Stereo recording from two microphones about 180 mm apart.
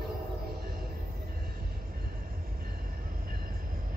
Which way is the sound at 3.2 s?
50° right (ahead or behind).